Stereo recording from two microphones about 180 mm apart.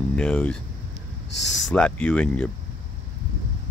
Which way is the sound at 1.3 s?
75° left (ahead or behind).